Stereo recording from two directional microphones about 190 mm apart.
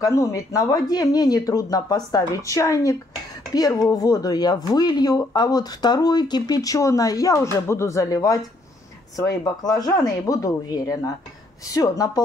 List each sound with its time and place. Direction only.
0.0 s speech: 15° left (ahead or behind)